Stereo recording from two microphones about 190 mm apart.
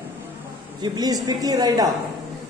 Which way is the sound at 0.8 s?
20° right (ahead or behind).